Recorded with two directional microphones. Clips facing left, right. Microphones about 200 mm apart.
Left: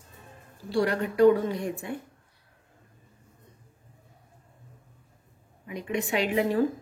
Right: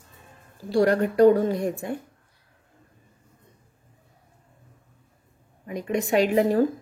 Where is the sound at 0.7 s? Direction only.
45° right (ahead or behind).